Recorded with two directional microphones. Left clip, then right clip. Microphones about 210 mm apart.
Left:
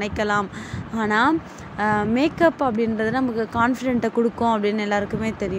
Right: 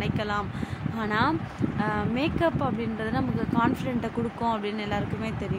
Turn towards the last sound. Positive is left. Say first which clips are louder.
# left 7 dB
turn(degrees=20)  # may be behind; listen again after turning